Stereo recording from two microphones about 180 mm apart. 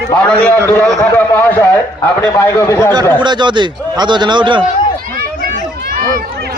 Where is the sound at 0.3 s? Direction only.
10° left (ahead or behind).